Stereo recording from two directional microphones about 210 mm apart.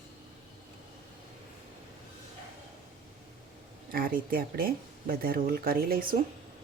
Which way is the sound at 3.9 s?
45° right (ahead or behind).